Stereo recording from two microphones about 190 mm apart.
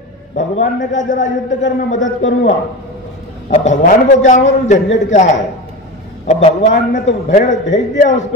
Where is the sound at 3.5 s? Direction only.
40° left (ahead or behind).